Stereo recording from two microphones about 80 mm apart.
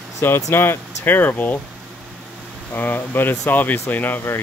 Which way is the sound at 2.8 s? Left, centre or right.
Left.